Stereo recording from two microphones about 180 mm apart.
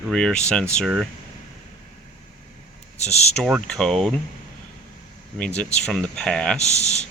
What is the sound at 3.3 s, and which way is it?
Speech, 5° left (ahead or behind).